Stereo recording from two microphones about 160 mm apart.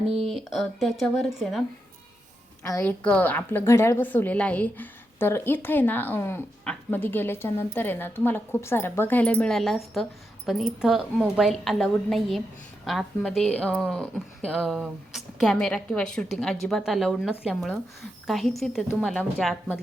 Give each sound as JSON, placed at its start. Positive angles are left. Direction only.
{"t": 0.3, "sound": "speech", "side_deg": 0}
{"t": 2.6, "sound": "a woman's voice", "side_deg": 20}
{"t": 3.0, "sound": "speech", "side_deg": 10}